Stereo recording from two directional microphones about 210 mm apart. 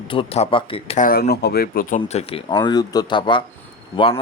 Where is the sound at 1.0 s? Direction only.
45° left (ahead or behind).